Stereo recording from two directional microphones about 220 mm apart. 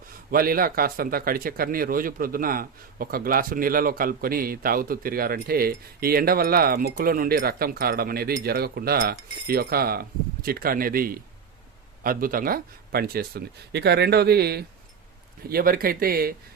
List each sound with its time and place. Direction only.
0.3 s speech: 40° right (ahead or behind)